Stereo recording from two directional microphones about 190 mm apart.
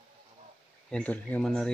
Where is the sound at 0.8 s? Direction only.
5° left (ahead or behind).